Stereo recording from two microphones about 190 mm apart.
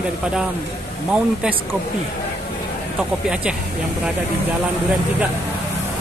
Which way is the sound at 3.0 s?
5° right (ahead or behind).